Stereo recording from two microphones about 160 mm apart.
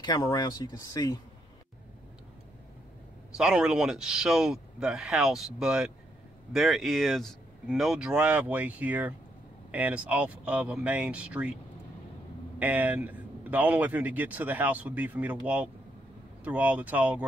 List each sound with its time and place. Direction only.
0.0 s speech: 25° left (ahead or behind)
3.3 s speech: 5° right (ahead or behind)
12.5 s speech: 10° right (ahead or behind)